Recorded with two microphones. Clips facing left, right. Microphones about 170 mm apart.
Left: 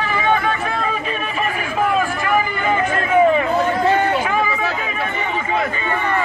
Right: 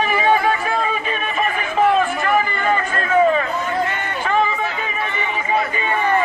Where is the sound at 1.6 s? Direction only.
5° left (ahead or behind).